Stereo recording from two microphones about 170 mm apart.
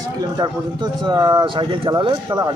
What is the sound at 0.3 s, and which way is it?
Speech, 25° right (ahead or behind).